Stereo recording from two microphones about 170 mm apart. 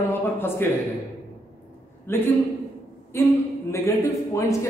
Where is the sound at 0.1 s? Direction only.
15° left (ahead or behind).